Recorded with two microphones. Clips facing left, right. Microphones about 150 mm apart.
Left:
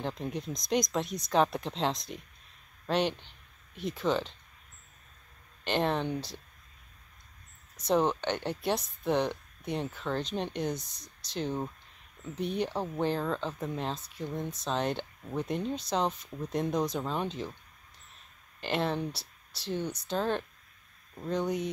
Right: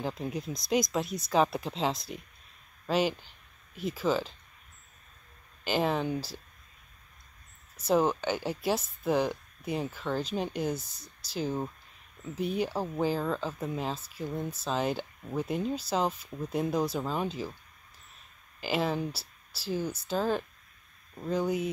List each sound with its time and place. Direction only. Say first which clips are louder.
0.0 s speech: right 1 dB; 5° right (ahead or behind)
5.6 s speech: right 1 dB; 5° right (ahead or behind)
7.7 s speech: right 1 dB; 5° right (ahead or behind)
18.6 s speech: right 1 dB; 5° right (ahead or behind)